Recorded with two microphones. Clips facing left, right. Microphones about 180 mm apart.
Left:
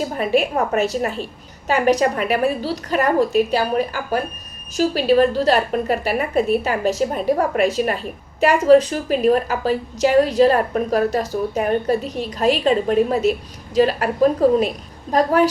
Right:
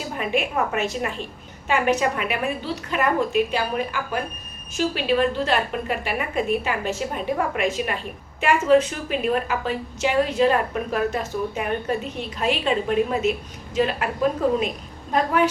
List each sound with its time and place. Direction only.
0.2 s a woman's voice: 35° left (ahead or behind)